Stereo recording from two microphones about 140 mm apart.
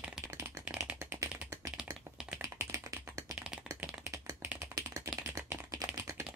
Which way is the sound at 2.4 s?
20° right (ahead or behind).